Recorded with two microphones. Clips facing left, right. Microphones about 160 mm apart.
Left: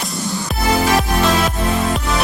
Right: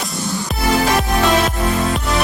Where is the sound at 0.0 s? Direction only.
Centre (ahead or behind).